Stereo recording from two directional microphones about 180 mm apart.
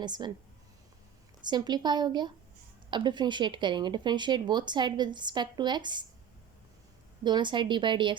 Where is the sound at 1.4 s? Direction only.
25° right (ahead or behind).